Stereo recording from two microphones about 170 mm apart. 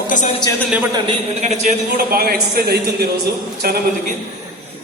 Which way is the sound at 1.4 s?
40° right (ahead or behind).